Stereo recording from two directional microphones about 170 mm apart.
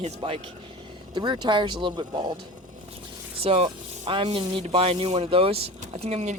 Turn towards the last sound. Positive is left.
turn(degrees=-40)  # may be behind; listen again after turning